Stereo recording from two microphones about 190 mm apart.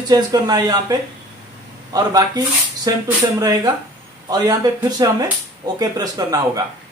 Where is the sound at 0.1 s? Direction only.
20° right (ahead or behind).